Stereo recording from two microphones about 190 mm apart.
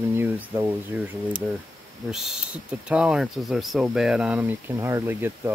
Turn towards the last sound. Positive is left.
turn(degrees=-10)  # may be behind; listen again after turning